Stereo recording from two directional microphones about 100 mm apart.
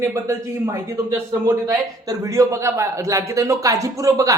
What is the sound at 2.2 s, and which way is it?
A man's voice, 30° right (ahead or behind).